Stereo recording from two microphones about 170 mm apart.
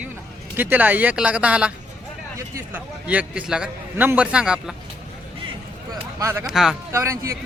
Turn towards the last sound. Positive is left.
turn(degrees=-15)  # may be behind; listen again after turning